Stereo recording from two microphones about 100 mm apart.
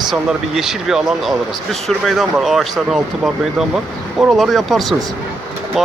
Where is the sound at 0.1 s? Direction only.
5° right (ahead or behind).